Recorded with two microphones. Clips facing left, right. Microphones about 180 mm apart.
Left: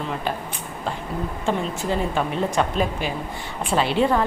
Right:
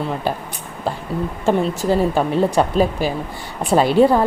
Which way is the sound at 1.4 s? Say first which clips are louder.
Right 7 dB; 40° right (ahead or behind).